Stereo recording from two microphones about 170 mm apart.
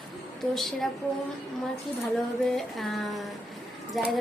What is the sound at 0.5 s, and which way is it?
Speech, centre (ahead or behind).